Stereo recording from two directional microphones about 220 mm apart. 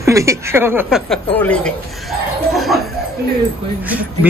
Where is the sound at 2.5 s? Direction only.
Centre (ahead or behind).